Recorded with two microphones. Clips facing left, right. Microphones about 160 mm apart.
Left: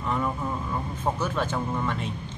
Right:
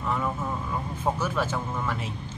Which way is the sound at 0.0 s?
Centre (ahead or behind).